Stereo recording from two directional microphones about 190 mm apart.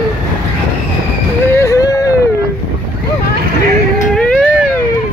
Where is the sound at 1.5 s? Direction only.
15° left (ahead or behind).